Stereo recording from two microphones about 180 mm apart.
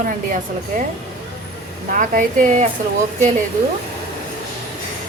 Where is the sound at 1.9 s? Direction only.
45° right (ahead or behind).